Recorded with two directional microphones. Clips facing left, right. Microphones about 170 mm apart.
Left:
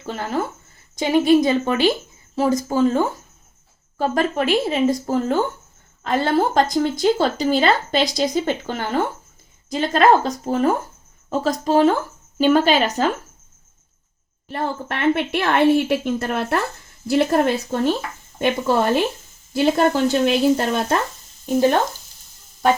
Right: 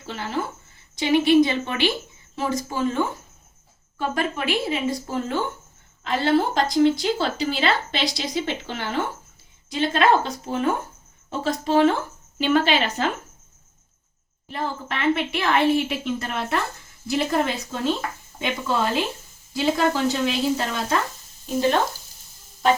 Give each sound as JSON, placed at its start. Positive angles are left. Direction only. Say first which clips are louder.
{"t": 0.0, "sound": "speech", "louder": "left 4 dB", "side_deg": 45}
{"t": 14.5, "sound": "a woman's voice", "louder": "left 3 dB", "side_deg": 55}